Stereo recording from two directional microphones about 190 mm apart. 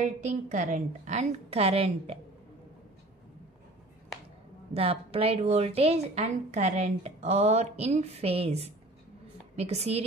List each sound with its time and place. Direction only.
0.0 s a woman's voice: 40° right (ahead or behind)
4.7 s a woman's voice: 30° right (ahead or behind)